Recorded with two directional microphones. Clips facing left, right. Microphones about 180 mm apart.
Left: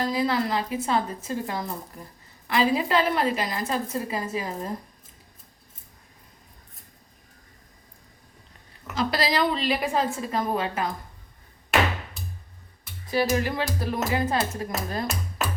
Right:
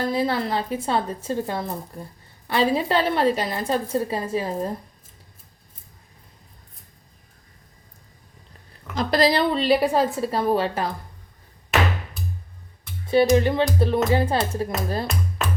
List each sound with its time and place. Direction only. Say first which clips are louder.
0.0 s a woman's voice: right 2 dB; 30° right (ahead or behind)
9.0 s a woman's voice: right 5 dB; 45° right (ahead or behind)
9.4 s a woman's voice: right 5 dB; 30° right (ahead or behind)
13.3 s a woman's voice: right 7 dB; 25° right (ahead or behind)